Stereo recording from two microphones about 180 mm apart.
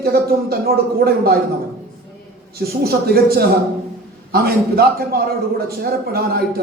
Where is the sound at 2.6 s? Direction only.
60° right (ahead or behind).